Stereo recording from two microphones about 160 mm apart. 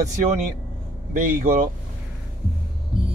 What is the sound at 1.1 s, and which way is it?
Speech, 55° right (ahead or behind).